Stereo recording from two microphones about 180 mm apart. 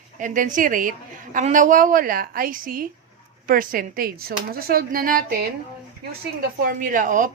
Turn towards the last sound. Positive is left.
turn(degrees=-45)  # may be behind; listen again after turning